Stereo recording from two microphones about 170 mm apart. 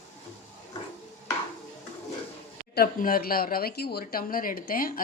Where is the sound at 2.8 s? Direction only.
60° left (ahead or behind).